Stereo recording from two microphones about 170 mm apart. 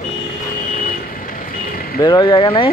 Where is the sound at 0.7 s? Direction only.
55° left (ahead or behind).